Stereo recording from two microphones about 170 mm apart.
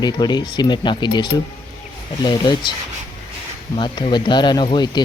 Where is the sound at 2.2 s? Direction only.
25° left (ahead or behind).